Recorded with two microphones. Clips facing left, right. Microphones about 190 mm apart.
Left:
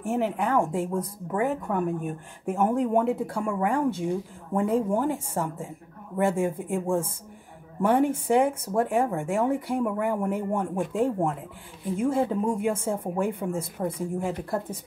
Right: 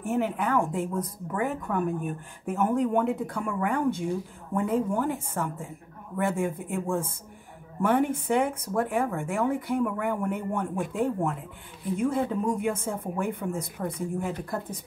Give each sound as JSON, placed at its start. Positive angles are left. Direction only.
{"t": 0.0, "sound": "speech", "side_deg": 30}